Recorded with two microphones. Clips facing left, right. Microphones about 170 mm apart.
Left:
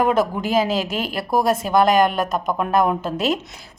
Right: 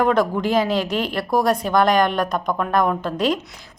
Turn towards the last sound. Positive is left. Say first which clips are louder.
# even
turn(degrees=5)  # may be behind; listen again after turning